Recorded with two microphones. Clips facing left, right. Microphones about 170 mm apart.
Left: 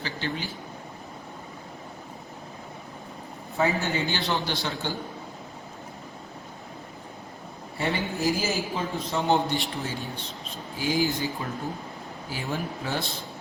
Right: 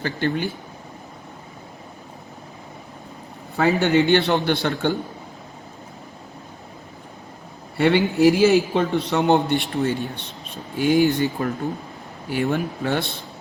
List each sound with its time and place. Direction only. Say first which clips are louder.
0.0 s speech: right 9 dB; 55° right (ahead or behind)
3.6 s a man's voice: right 8 dB; 70° right (ahead or behind)
7.8 s a man's voice: right 11 dB; 80° right